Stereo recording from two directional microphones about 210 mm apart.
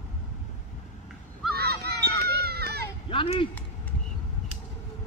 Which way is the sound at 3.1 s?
25° left (ahead or behind).